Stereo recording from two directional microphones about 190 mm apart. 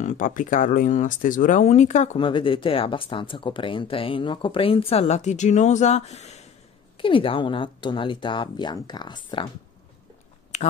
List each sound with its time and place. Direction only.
0.0 s speech: 40° left (ahead or behind)
2.1 s speech: 25° left (ahead or behind)
10.5 s a sound: 35° left (ahead or behind)